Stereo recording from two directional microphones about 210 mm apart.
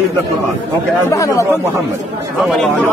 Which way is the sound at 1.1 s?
15° left (ahead or behind).